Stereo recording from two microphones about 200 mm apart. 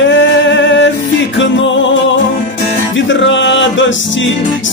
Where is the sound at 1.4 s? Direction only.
70° left (ahead or behind).